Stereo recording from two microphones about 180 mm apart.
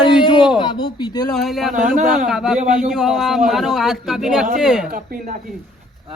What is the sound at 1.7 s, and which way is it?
Speech, 50° right (ahead or behind).